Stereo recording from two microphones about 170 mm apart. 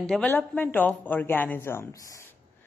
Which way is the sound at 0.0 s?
5° left (ahead or behind).